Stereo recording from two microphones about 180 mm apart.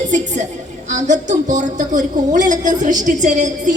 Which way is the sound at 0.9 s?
45° right (ahead or behind).